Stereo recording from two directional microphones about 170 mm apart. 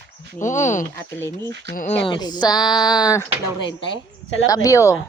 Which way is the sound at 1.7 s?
55° left (ahead or behind).